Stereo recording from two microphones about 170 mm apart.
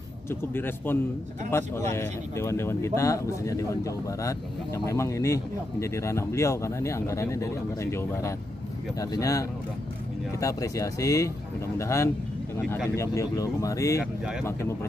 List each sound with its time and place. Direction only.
0.3 s speech: 15° left (ahead or behind)